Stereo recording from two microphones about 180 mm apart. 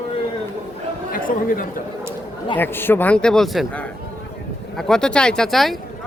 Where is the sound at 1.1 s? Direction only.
50° left (ahead or behind).